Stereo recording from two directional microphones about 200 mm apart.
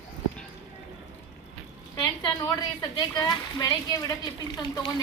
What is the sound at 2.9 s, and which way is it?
Speech, 20° left (ahead or behind).